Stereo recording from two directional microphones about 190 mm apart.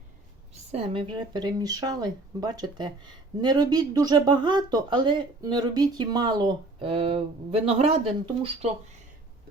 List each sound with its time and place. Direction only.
0.7 s speech: 30° right (ahead or behind)